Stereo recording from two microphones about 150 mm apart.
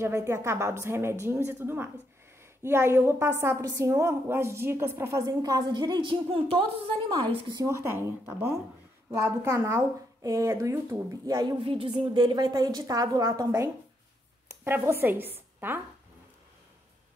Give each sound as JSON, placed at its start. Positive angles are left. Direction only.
{"t": 0.0, "sound": "a woman's voice", "side_deg": -20}
{"t": 7.6, "sound": "a woman's voice", "side_deg": -20}
{"t": 11.6, "sound": "speech", "side_deg": -35}